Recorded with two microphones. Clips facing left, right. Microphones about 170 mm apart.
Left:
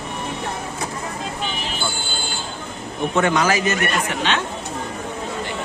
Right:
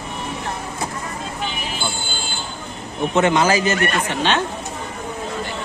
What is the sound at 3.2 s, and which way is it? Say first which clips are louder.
Speech: right 2 dB; 25° right (ahead or behind).